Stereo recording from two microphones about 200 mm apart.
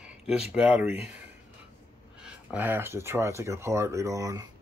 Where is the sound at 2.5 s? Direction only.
10° right (ahead or behind).